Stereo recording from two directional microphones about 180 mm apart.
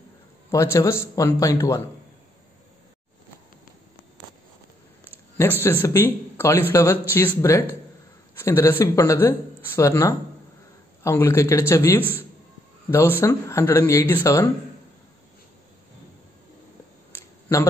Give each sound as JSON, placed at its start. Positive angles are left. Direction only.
{"t": 0.5, "sound": "a man's voice", "side_deg": 15}
{"t": 5.4, "sound": "a man's voice", "side_deg": 10}
{"t": 17.1, "sound": "a sound", "side_deg": 15}